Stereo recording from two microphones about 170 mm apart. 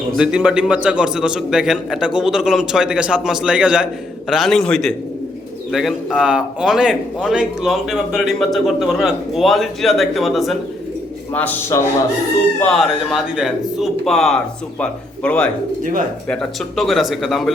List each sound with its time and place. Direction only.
0.2 s a man's voice: 5° right (ahead or behind)
15.8 s speech: 55° right (ahead or behind)
16.3 s a man's voice: centre (ahead or behind)